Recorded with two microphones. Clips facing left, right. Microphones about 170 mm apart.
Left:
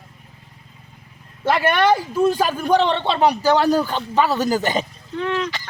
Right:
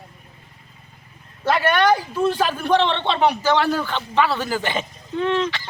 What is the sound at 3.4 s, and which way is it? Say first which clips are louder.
A man's voice: left 3 dB; 40° left (ahead or behind).